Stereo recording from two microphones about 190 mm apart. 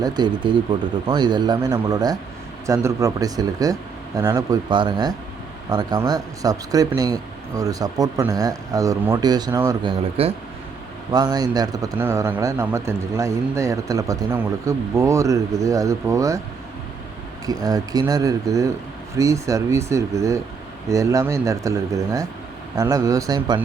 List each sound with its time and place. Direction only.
0.0 s speech: 25° right (ahead or behind)
10.2 s speech: 30° right (ahead or behind)
11.1 s a man's voice: 20° right (ahead or behind)
17.4 s a man's voice: 20° right (ahead or behind)